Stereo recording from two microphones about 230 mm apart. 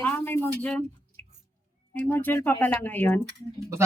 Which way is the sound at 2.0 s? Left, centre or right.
Centre.